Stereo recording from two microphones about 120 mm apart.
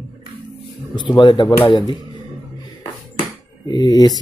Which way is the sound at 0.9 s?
40° left (ahead or behind).